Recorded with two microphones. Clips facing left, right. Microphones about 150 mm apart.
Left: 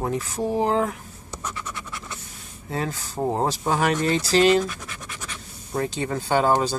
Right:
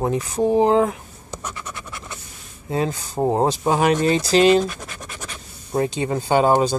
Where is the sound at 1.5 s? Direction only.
20° right (ahead or behind).